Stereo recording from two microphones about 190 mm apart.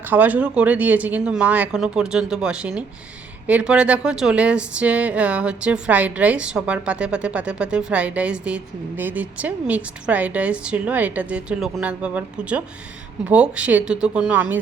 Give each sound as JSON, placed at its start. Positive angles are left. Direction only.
{"t": 0.1, "sound": "a woman's voice", "side_deg": -10}